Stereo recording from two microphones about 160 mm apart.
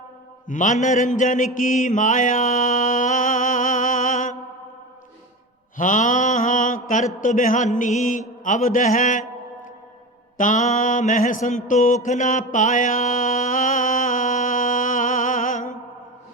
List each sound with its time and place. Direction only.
0.4 s mantra: 50° left (ahead or behind)
5.7 s mantra: 55° left (ahead or behind)
10.3 s mantra: 55° left (ahead or behind)